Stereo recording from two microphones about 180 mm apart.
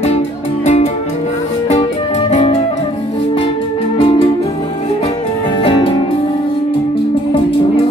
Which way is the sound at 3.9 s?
25° left (ahead or behind).